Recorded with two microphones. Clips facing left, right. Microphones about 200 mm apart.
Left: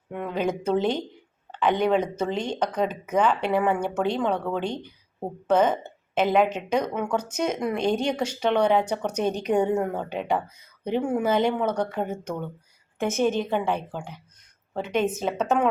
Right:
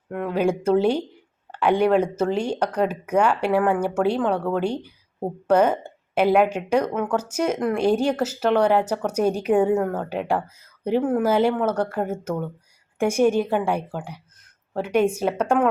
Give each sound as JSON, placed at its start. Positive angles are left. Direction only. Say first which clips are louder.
{"t": 0.1, "sound": "speech", "louder": "right 4 dB", "side_deg": 0}